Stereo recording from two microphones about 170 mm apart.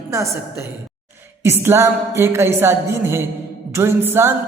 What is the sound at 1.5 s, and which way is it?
A woman's voice, 15° right (ahead or behind).